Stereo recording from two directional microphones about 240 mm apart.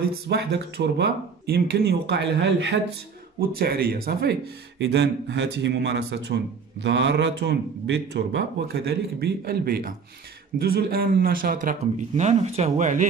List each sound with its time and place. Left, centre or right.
0.3 s a man's voice: right